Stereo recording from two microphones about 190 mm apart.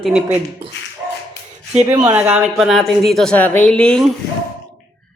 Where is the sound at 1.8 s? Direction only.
15° right (ahead or behind); by 4.1 s 5° left (ahead or behind).